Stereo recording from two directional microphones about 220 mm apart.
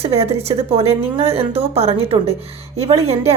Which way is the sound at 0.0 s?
25° right (ahead or behind).